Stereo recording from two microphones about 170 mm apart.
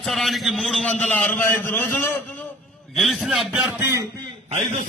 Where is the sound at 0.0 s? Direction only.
Centre (ahead or behind).